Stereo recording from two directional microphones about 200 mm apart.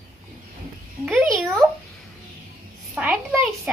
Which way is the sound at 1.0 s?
Centre (ahead or behind).